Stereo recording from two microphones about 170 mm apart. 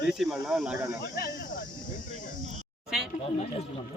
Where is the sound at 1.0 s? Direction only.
75° left (ahead or behind).